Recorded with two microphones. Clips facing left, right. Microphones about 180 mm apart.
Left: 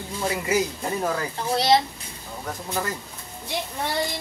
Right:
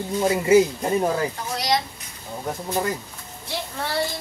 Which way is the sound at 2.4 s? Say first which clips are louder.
Right 4 dB; 20° right (ahead or behind).